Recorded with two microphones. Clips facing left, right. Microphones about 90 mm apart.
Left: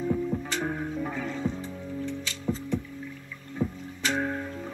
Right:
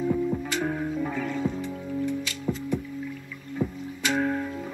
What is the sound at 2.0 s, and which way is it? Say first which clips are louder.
Music: right 1 dB; 10° right (ahead or behind).